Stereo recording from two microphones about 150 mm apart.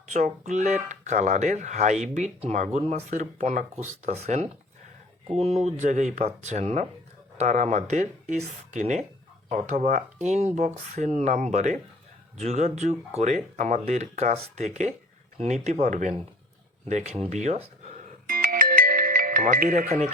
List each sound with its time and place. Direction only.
0.1 s speech: 50° right (ahead or behind)
18.3 s music: 70° right (ahead or behind)